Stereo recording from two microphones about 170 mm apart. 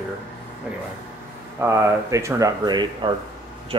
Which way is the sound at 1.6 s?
15° right (ahead or behind).